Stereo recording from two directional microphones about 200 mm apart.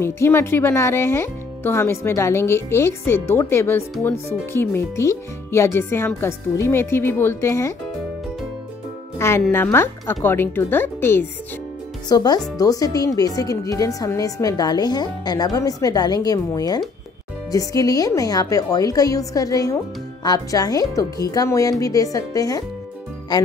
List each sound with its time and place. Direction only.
0.0 s speech: 10° left (ahead or behind)
9.4 s speech: 10° left (ahead or behind)